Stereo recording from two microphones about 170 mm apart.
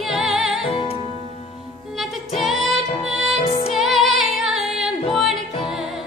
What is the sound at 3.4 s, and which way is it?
Music, 35° left (ahead or behind).